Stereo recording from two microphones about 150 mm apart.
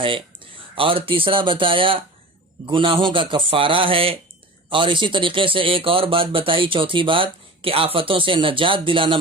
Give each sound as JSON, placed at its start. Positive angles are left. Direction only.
{"t": 0.0, "sound": "speech", "side_deg": -35}